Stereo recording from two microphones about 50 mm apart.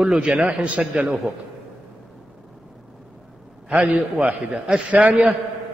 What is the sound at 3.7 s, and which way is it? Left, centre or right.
A man's voice, right.